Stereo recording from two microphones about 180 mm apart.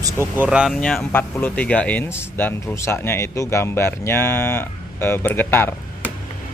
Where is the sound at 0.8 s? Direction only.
10° left (ahead or behind).